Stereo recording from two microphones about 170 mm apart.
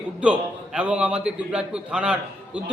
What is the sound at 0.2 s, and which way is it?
A man's voice, 5° right (ahead or behind).